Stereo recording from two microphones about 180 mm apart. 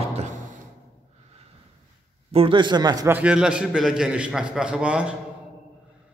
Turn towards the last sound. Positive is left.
turn(degrees=-5)  # may be behind; listen again after turning